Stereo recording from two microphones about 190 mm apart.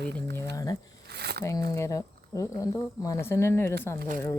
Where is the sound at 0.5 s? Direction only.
20° left (ahead or behind).